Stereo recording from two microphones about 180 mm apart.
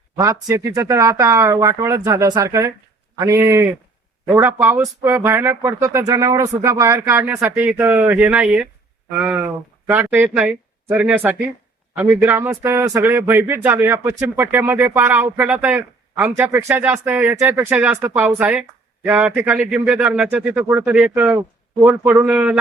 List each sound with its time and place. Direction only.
0.2 s speech: 20° right (ahead or behind)